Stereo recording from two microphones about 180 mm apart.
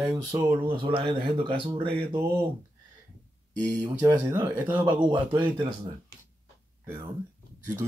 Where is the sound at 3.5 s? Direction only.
20° right (ahead or behind).